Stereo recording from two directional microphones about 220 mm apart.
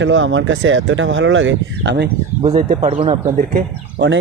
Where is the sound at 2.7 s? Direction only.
25° right (ahead or behind).